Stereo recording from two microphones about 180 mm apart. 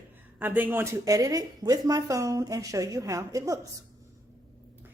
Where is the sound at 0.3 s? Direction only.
10° right (ahead or behind).